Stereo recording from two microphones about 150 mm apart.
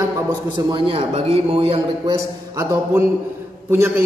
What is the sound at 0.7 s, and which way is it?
A man's voice, 35° right (ahead or behind).